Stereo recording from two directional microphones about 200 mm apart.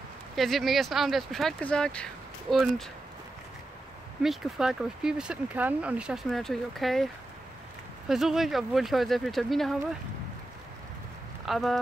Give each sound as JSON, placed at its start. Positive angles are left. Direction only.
{"t": 0.4, "sound": "speech", "side_deg": 0}
{"t": 4.2, "sound": "speech", "side_deg": 0}
{"t": 8.1, "sound": "speech", "side_deg": 0}
{"t": 11.4, "sound": "speech", "side_deg": 0}